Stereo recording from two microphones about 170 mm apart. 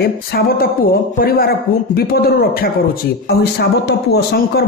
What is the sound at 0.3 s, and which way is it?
A man's voice, 60° left (ahead or behind).